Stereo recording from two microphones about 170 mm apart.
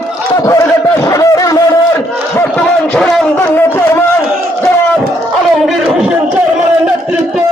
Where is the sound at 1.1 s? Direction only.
20° left (ahead or behind).